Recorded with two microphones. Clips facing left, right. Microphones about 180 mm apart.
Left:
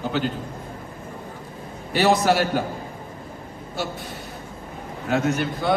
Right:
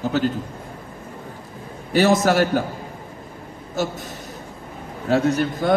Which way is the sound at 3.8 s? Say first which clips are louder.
Right 5 dB; 45° right (ahead or behind).